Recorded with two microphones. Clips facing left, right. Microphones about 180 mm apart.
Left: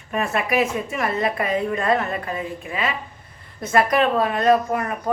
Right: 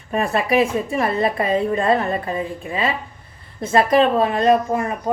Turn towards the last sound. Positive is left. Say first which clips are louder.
# right 2 dB
turn(degrees=-25)  # may be behind; listen again after turning